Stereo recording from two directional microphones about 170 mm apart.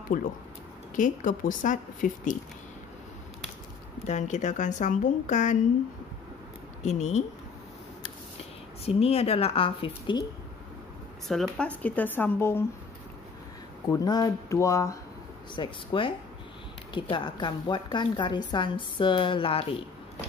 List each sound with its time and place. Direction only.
0.1 s speech: 50° left (ahead or behind)
4.0 s speech: 45° left (ahead or behind)
6.8 s speech: 40° left (ahead or behind)
8.8 s a woman's voice: 35° left (ahead or behind)
11.2 s speech: centre (ahead or behind)
13.8 s a woman's voice: 20° left (ahead or behind)
15.5 s a woman's voice: 30° left (ahead or behind)